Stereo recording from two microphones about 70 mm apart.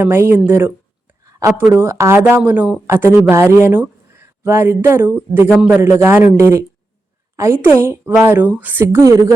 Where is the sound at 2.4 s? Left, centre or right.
Right.